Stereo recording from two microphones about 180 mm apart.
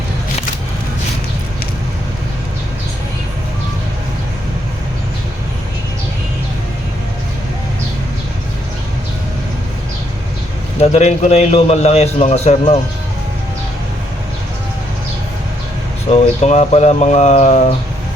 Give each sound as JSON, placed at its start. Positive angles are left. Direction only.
{"t": 10.8, "sound": "a man's voice", "side_deg": 40}
{"t": 16.1, "sound": "a man's voice", "side_deg": 35}